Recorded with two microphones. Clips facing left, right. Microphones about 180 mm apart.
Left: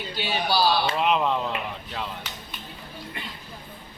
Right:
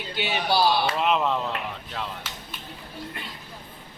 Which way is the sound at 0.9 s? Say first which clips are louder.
Even; centre (ahead or behind).